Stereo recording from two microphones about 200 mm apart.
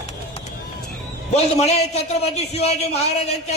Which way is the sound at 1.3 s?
35° left (ahead or behind).